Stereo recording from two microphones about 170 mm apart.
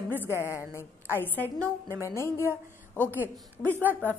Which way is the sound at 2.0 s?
15° left (ahead or behind).